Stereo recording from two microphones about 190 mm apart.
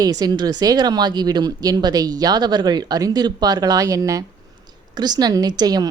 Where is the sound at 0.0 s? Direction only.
20° right (ahead or behind).